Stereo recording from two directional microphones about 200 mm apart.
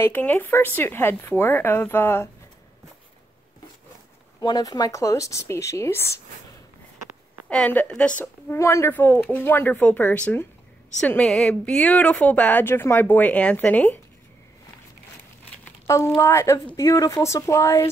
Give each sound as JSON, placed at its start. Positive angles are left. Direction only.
{"t": 0.0, "sound": "a woman's voice", "side_deg": 10}
{"t": 4.4, "sound": "a woman's voice", "side_deg": 20}
{"t": 7.4, "sound": "a woman's voice", "side_deg": 5}
{"t": 15.5, "sound": "a sound", "side_deg": 10}
{"t": 16.2, "sound": "a woman's voice", "side_deg": 15}